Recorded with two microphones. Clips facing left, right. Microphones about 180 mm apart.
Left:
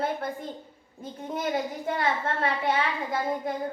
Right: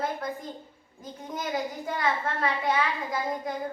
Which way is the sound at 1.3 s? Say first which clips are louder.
Left 2 dB; 30° left (ahead or behind).